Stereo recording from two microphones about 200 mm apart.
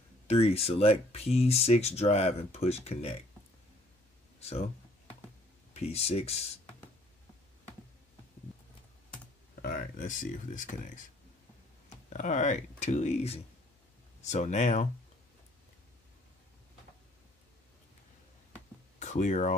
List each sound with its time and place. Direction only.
0.3 s speech: 30° left (ahead or behind)
5.7 s speech: 30° left (ahead or behind)
9.6 s speech: 45° left (ahead or behind)
12.1 s speech: 35° left (ahead or behind)
18.5 s a sound: 35° left (ahead or behind)